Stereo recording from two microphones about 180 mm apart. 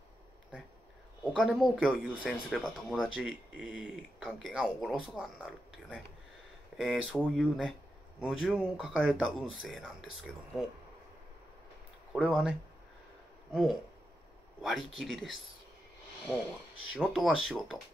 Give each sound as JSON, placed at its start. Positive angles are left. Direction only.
{"t": 1.2, "sound": "speech", "side_deg": 0}
{"t": 12.1, "sound": "speech", "side_deg": -5}
{"t": 16.9, "sound": "speech", "side_deg": 0}